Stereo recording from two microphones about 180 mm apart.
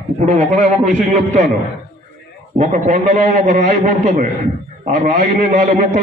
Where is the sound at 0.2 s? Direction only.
40° right (ahead or behind).